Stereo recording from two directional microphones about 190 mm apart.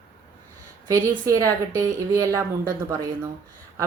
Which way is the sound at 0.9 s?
15° right (ahead or behind).